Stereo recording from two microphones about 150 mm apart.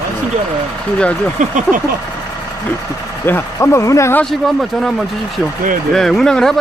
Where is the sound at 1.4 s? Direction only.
55° right (ahead or behind).